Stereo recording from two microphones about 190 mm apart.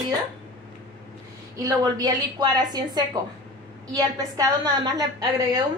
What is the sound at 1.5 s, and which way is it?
A woman's voice, 20° right (ahead or behind).